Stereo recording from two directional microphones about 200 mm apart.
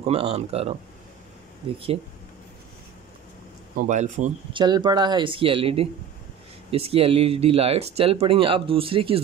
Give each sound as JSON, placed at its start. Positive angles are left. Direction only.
{"t": 0.0, "sound": "speech", "side_deg": -30}
{"t": 3.8, "sound": "speech", "side_deg": -35}